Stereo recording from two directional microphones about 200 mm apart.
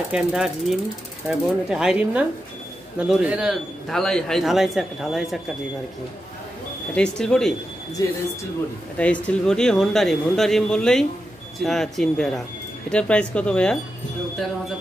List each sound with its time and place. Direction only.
0.1 s a man's voice: 5° right (ahead or behind)
7.0 s a man's voice: 5° left (ahead or behind)
8.0 s speech: 20° left (ahead or behind)
8.9 s a man's voice: 5° left (ahead or behind)